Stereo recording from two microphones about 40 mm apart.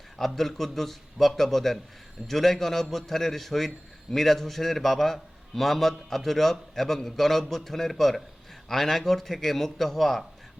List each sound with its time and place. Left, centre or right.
0.3 s a man's voice: centre